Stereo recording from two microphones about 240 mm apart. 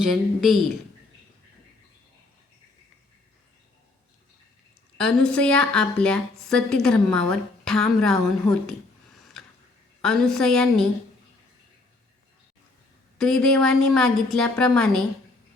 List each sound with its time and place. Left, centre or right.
0.0 s a woman's voice: centre
4.9 s a woman's voice: centre
10.0 s a woman's voice: centre
13.1 s a woman's voice: centre